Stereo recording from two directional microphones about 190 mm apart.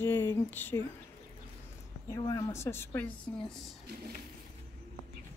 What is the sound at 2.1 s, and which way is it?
Speech, 15° left (ahead or behind).